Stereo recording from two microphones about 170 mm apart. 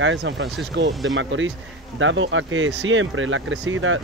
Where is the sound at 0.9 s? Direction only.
Centre (ahead or behind).